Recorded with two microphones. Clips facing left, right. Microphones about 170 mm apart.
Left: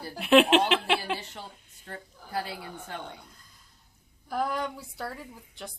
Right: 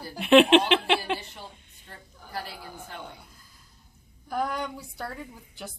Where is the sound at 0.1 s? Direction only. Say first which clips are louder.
Right 3 dB; centre (ahead or behind).